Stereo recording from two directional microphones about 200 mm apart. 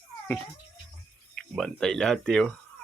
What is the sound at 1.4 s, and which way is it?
Speech, centre (ahead or behind).